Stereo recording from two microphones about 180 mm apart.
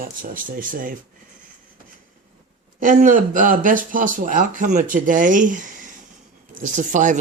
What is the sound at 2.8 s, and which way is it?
Speech, 45° right (ahead or behind).